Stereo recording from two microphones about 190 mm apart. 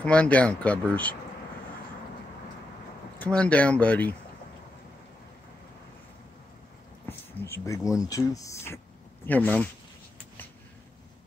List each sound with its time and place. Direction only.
0.0 s speech: 5° left (ahead or behind)
3.2 s speech: 5° left (ahead or behind)
7.1 s speech: 15° left (ahead or behind)